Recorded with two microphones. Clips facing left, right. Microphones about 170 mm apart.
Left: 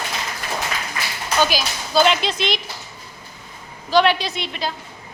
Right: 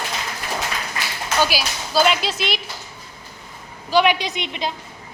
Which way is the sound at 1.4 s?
10° right (ahead or behind).